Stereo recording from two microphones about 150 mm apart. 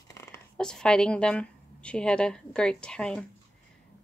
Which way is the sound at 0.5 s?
5° left (ahead or behind).